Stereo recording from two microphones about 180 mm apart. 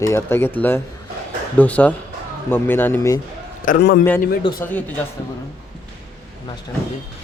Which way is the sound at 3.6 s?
55° left (ahead or behind).